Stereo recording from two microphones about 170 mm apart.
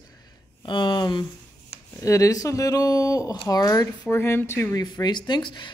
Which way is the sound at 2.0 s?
20° left (ahead or behind).